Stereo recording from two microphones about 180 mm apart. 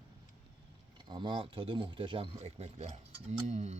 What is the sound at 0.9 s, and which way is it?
Speech, 25° right (ahead or behind).